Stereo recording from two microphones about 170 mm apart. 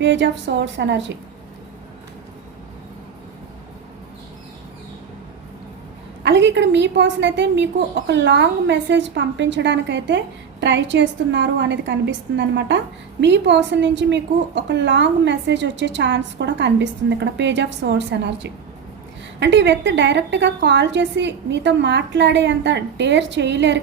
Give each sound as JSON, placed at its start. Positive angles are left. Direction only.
{"t": 0.0, "sound": "a woman's voice", "side_deg": -90}
{"t": 6.2, "sound": "a woman's voice", "side_deg": -90}